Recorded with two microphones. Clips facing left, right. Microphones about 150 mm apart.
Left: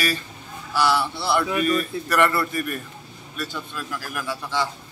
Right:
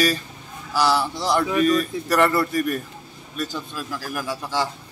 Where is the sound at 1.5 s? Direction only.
5° left (ahead or behind).